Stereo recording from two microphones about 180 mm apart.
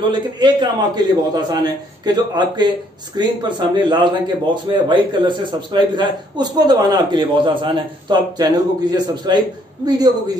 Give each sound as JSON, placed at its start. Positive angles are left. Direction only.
{"t": 0.1, "sound": "a man's voice", "side_deg": -25}